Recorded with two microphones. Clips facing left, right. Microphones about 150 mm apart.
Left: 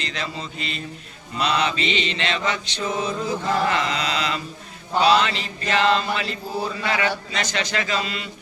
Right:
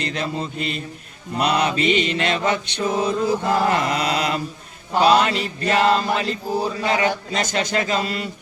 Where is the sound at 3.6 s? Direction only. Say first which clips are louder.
Right 3 dB; 50° right (ahead or behind).